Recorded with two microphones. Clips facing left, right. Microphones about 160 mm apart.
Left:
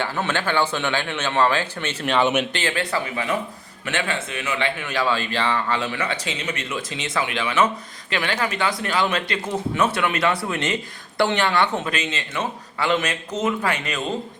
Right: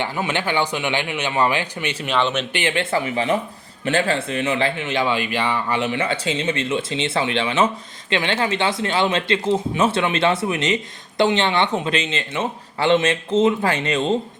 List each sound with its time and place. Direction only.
0.0 s a man's voice: 15° right (ahead or behind)
2.0 s speech: 5° left (ahead or behind)
2.5 s speech: 20° right (ahead or behind)